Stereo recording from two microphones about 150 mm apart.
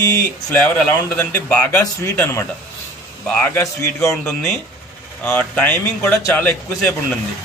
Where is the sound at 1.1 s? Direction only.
10° left (ahead or behind).